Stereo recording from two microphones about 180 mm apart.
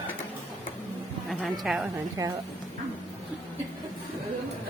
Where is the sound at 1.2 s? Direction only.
Centre (ahead or behind).